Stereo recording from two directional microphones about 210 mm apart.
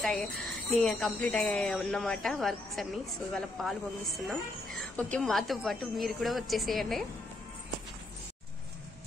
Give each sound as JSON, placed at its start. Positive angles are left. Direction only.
{"t": 0.0, "sound": "a woman's voice", "side_deg": 0}
{"t": 4.9, "sound": "a woman's voice", "side_deg": 5}